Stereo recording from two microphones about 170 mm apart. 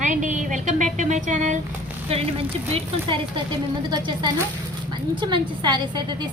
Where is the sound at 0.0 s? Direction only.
45° right (ahead or behind).